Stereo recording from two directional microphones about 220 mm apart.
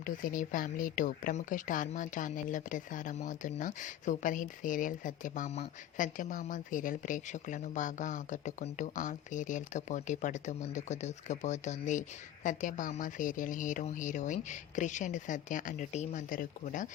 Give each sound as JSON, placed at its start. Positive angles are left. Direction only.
{"t": 0.0, "sound": "speech", "side_deg": 35}